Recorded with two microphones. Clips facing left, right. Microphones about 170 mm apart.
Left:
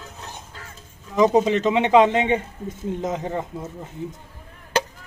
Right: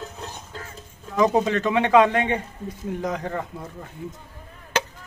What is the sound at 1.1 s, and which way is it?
Speech, 20° left (ahead or behind).